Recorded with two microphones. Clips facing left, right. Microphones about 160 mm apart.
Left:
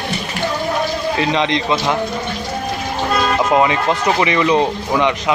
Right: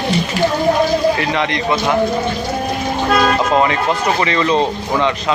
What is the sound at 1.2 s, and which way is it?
Speech, 20° left (ahead or behind).